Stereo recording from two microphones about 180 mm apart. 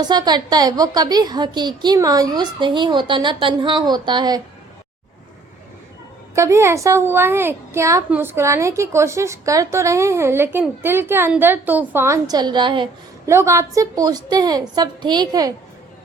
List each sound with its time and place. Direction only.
0.0 s a woman's voice: 25° right (ahead or behind)
6.3 s a child's voice: 15° right (ahead or behind)
13.2 s a woman's voice: 15° right (ahead or behind)